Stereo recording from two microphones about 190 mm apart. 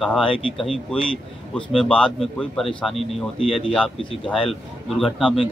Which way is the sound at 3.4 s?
30° left (ahead or behind).